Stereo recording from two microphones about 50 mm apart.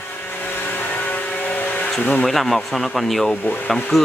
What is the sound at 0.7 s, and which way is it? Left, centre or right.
Vehicle, left.